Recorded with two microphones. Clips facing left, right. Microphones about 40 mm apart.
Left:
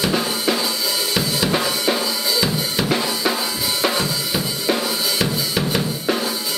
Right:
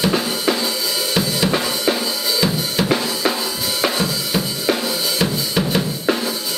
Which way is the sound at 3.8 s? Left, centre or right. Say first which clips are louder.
Right 1 dB; centre.